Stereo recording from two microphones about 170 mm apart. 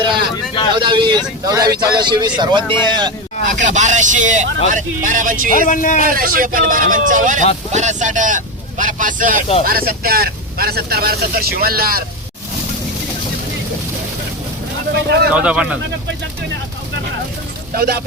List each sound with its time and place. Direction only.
0.7 s speech: 30° right (ahead or behind)
3.6 s speech: 45° right (ahead or behind)
5.6 s a man's voice: 50° left (ahead or behind)
6.0 s speech: 55° right (ahead or behind)
9.6 s speech: 60° right (ahead or behind)
14.9 s speech: 75° right (ahead or behind)
15.3 s speech: 5° right (ahead or behind)
17.7 s speech: 65° right (ahead or behind)